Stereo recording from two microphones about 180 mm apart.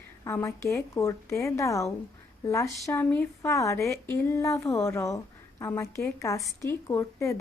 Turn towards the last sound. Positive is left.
turn(degrees=15)  # may be behind; listen again after turning